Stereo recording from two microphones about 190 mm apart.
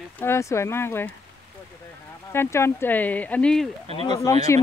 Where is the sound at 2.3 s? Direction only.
15° left (ahead or behind).